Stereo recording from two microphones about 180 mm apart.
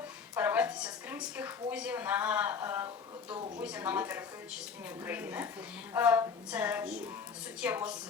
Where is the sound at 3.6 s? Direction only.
10° right (ahead or behind).